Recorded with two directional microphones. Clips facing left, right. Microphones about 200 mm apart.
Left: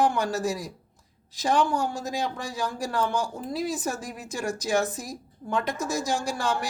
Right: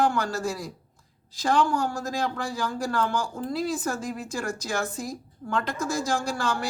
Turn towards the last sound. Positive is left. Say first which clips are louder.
# even
turn(degrees=20)  # may be behind; listen again after turning